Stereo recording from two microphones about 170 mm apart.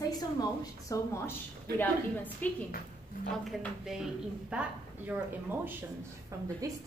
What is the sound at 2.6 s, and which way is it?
Speech, 60° left (ahead or behind).